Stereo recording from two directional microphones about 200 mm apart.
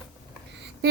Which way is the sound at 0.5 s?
55° right (ahead or behind).